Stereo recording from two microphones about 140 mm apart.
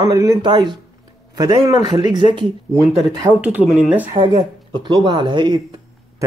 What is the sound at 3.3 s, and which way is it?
Speech, 10° right (ahead or behind).